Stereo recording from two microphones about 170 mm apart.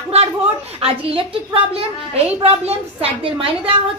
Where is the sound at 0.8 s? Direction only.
35° right (ahead or behind).